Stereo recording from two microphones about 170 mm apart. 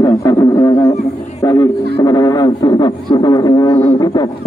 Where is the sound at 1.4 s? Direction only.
20° left (ahead or behind).